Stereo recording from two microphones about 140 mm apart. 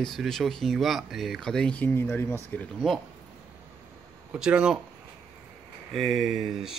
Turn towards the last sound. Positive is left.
turn(degrees=-5)  # may be behind; listen again after turning